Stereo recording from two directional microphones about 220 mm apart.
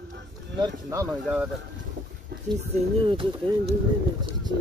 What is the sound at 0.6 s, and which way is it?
Speech, 15° right (ahead or behind).